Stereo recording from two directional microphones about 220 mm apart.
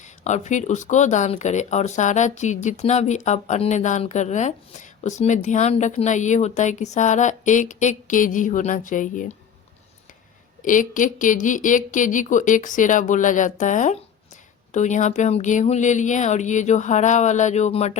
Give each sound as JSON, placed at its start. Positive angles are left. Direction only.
{"t": 0.3, "sound": "speech", "side_deg": 30}
{"t": 10.6, "sound": "speech", "side_deg": 35}